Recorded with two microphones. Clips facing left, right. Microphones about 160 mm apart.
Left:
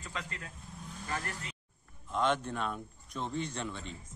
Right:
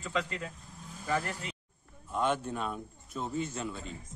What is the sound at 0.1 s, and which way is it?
Speech, 90° right.